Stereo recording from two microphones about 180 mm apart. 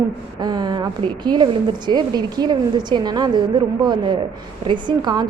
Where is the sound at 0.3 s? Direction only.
20° right (ahead or behind).